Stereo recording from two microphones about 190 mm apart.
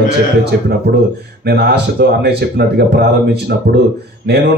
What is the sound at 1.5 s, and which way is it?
Speech, 55° right (ahead or behind).